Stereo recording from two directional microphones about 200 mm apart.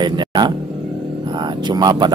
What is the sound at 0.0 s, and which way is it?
Speech, 20° right (ahead or behind).